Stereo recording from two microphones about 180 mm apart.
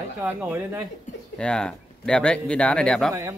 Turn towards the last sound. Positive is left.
turn(degrees=-15)  # may be behind; listen again after turning